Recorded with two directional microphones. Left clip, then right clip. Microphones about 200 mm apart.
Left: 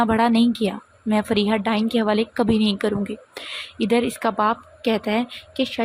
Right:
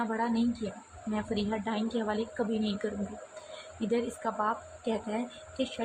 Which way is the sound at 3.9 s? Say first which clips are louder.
Left 11 dB; 40° left (ahead or behind).